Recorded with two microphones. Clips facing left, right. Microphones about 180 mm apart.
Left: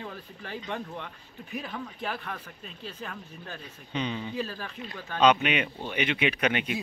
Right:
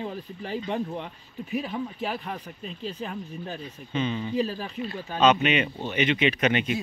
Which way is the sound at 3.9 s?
15° left (ahead or behind).